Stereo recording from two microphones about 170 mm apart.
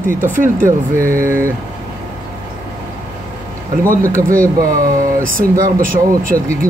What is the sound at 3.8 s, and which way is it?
Speech, 55° right (ahead or behind).